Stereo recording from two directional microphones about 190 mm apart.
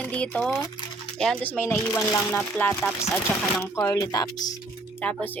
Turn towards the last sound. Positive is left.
turn(degrees=10)  # may be behind; listen again after turning